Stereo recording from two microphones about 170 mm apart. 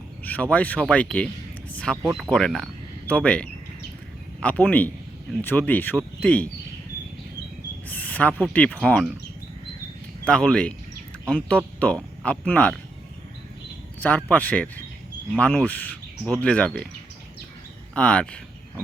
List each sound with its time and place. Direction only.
0.3 s speech: 10° left (ahead or behind)
7.9 s speech: 10° left (ahead or behind)
10.2 s speech: 5° left (ahead or behind)
14.0 s speech: 10° left (ahead or behind)
17.9 s speech: 5° left (ahead or behind)